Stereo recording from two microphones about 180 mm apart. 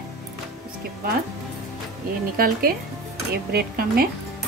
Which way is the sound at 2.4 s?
55° right (ahead or behind).